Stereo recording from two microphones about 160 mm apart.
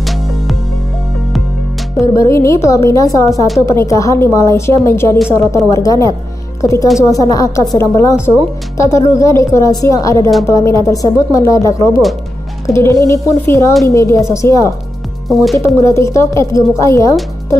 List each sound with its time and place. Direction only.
0.0 s music: centre (ahead or behind)
2.0 s a woman's voice: 20° left (ahead or behind)
15.2 s speech: centre (ahead or behind)
15.5 s speech: 20° left (ahead or behind)